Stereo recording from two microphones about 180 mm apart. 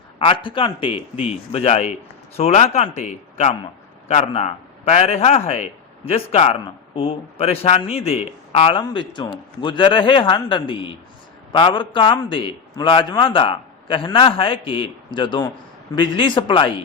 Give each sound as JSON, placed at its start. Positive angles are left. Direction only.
{"t": 0.2, "sound": "a man's voice", "side_deg": 25}
{"t": 0.9, "sound": "speech", "side_deg": -5}
{"t": 1.3, "sound": "a man's voice", "side_deg": 35}